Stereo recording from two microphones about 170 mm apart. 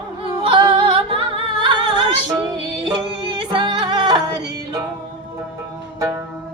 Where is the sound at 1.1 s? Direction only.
30° right (ahead or behind).